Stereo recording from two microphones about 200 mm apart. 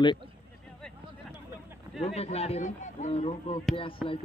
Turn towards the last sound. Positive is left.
turn(degrees=25)  # may be behind; listen again after turning